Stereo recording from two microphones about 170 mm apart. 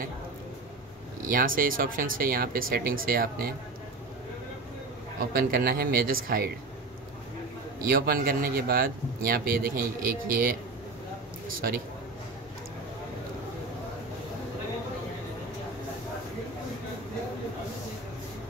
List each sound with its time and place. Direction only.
1.2 s speech: 55° right (ahead or behind)
5.3 s speech: 65° right (ahead or behind)
7.8 s speech: 60° right (ahead or behind)